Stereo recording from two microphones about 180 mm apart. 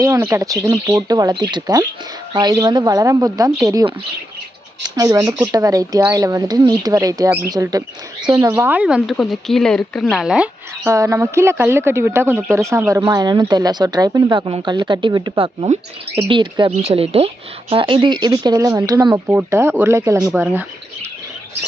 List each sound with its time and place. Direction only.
0.0 s speech: 15° right (ahead or behind)
10.9 s speech: 15° right (ahead or behind)